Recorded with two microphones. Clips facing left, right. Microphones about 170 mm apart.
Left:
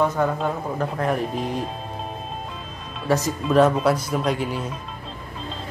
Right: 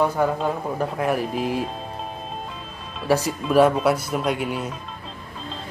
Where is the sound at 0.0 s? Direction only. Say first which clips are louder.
Even; 10° right (ahead or behind).